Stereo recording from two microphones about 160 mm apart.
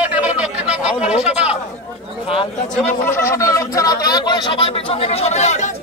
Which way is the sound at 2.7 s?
10° left (ahead or behind).